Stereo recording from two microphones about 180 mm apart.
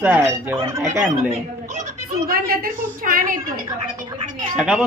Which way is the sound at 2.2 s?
55° right (ahead or behind).